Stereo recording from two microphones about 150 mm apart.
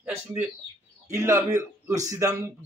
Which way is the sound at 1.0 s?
20° right (ahead or behind).